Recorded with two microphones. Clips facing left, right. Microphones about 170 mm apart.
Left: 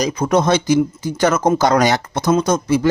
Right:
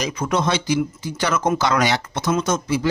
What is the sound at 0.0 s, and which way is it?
Speech, 40° left (ahead or behind).